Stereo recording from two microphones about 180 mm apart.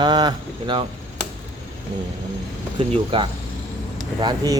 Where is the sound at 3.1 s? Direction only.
30° right (ahead or behind).